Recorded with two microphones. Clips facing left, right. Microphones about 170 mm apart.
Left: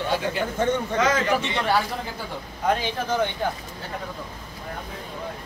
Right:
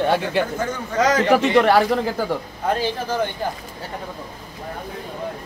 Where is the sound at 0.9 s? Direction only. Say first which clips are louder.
Right 8 dB; 40° right (ahead or behind).